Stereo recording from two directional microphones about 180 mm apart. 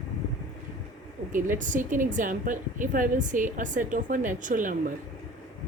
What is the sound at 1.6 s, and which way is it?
A woman's voice, 45° right (ahead or behind).